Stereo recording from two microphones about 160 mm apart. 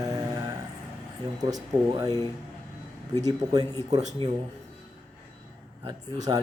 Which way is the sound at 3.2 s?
25° right (ahead or behind).